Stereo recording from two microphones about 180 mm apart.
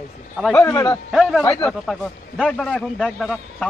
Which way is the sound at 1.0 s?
5° right (ahead or behind).